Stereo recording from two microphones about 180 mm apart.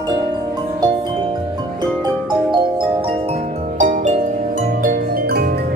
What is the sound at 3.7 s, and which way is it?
Music, 40° right (ahead or behind).